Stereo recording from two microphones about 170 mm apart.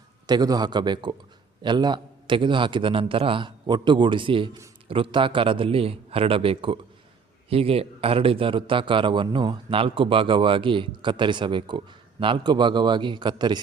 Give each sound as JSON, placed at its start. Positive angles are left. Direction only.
{"t": 0.3, "sound": "a man's voice", "side_deg": -25}